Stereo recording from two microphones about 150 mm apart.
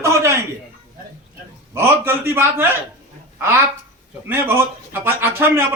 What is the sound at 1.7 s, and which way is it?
Speech, 15° right (ahead or behind).